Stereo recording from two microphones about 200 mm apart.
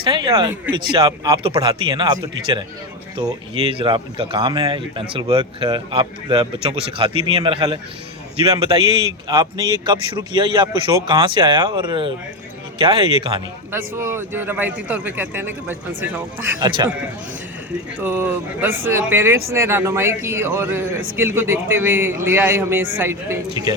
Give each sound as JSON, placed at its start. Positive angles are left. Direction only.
{"t": 0.0, "sound": "speech", "side_deg": -20}
{"t": 13.7, "sound": "speech", "side_deg": -10}
{"t": 16.6, "sound": "speech", "side_deg": -20}
{"t": 18.0, "sound": "speech", "side_deg": -10}